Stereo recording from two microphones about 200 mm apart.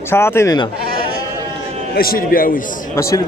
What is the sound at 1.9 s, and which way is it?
Speech, 50° left (ahead or behind).